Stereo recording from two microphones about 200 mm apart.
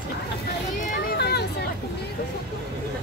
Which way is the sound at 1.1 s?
55° left (ahead or behind).